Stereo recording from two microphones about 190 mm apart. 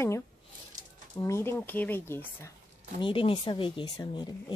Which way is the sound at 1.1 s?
15° left (ahead or behind).